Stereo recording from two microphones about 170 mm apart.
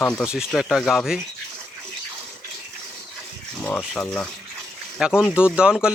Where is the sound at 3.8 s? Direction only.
5° left (ahead or behind).